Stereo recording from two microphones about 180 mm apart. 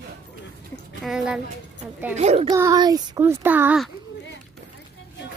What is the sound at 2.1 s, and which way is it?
Speech, 40° right (ahead or behind).